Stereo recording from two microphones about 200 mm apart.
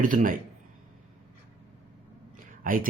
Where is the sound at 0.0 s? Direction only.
40° right (ahead or behind).